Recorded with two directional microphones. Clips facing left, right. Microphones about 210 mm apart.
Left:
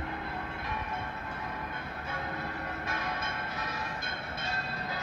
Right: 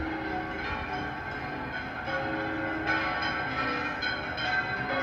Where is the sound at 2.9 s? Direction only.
55° right (ahead or behind).